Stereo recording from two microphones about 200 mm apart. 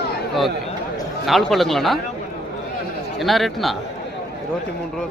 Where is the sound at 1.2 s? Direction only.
Centre (ahead or behind).